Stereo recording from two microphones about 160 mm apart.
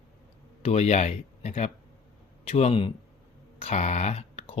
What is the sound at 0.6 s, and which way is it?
Speech, 45° left (ahead or behind).